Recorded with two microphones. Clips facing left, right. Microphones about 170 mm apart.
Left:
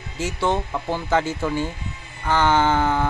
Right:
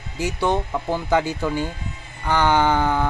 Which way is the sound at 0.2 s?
15° right (ahead or behind).